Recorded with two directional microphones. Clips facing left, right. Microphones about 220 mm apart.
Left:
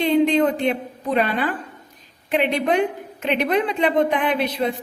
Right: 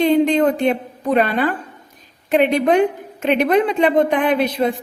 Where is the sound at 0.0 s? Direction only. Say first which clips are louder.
Right 3 dB; 45° right (ahead or behind).